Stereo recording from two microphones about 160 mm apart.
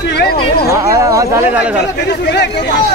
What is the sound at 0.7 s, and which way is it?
Speech, 20° right (ahead or behind).